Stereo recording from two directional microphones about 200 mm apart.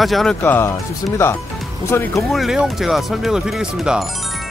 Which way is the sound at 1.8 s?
15° left (ahead or behind).